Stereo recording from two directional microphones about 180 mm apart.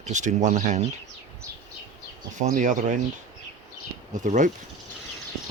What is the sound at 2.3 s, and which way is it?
Speech, 45° right (ahead or behind).